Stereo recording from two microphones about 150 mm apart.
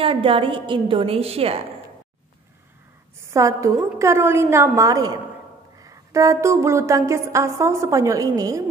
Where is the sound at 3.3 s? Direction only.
20° right (ahead or behind).